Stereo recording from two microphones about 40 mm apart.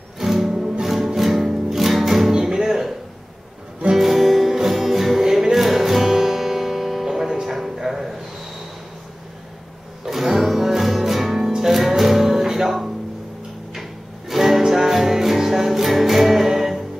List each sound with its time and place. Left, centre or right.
0.2 s music: centre
0.5 s music: centre
0.8 s music: centre
3.9 s music: centre
7.9 s a sound: centre
10.0 s music: centre
14.3 s music: centre